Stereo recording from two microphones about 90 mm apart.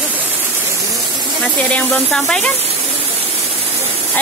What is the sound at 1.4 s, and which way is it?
Speech, 15° left (ahead or behind).